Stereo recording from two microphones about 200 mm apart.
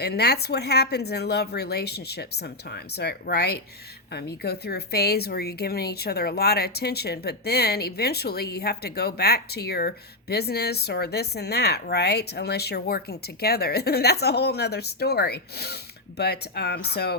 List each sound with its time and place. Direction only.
0.0 s a woman's voice: 55° left (ahead or behind)